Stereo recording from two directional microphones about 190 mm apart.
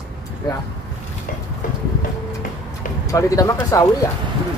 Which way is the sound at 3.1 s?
15° left (ahead or behind).